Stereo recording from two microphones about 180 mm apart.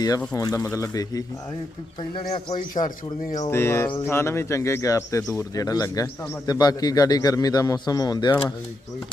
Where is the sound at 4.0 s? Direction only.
15° left (ahead or behind).